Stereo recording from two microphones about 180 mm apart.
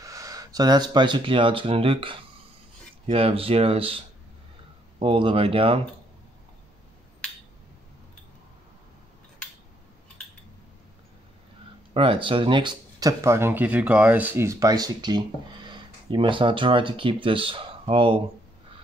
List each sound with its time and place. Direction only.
0.0 s speech: 20° right (ahead or behind)
11.9 s speech: 30° right (ahead or behind)